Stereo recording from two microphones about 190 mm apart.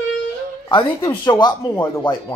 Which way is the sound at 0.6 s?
25° left (ahead or behind).